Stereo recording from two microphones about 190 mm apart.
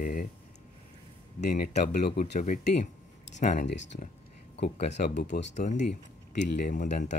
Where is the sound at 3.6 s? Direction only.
70° left (ahead or behind).